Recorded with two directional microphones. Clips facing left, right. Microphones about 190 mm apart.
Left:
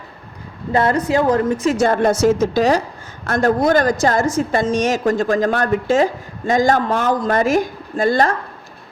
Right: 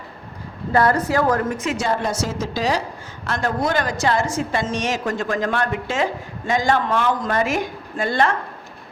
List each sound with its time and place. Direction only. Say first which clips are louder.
0.7 s a woman's voice: left 2 dB; 20° left (ahead or behind)
1.7 s a woman's voice: left 8 dB; 50° left (ahead or behind)